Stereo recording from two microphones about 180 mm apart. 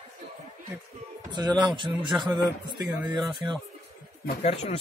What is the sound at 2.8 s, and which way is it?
Speech, 10° right (ahead or behind).